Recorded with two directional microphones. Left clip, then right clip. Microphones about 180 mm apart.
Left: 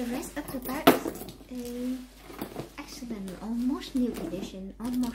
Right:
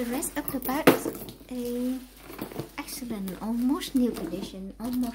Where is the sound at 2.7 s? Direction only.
35° right (ahead or behind).